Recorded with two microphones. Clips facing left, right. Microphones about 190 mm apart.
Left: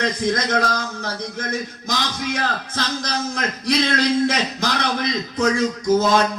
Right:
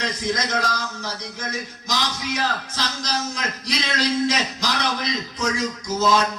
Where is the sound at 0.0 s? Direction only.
55° left (ahead or behind).